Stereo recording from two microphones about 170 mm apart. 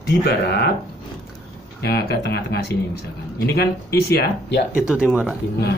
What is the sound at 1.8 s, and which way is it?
Speech, 70° left (ahead or behind).